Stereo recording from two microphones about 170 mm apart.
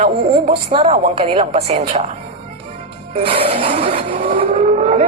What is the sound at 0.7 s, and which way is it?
A woman's voice, 35° right (ahead or behind).